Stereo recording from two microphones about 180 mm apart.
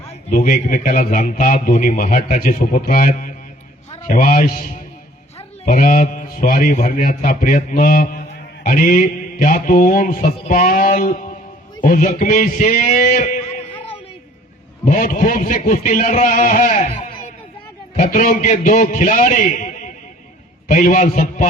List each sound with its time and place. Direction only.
0.3 s a man's voice: 45° left (ahead or behind)
14.8 s a man's voice: 45° left (ahead or behind)
17.9 s a man's voice: 45° left (ahead or behind)